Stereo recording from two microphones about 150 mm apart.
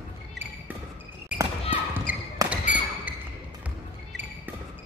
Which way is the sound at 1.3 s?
10° right (ahead or behind).